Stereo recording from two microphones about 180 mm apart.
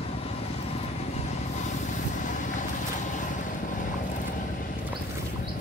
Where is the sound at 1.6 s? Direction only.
40° left (ahead or behind).